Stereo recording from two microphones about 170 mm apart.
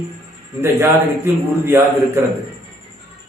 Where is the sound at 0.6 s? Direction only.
15° right (ahead or behind).